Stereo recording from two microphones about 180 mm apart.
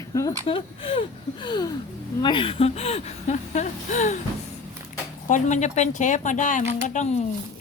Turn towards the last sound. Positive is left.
turn(degrees=40)  # may be behind; listen again after turning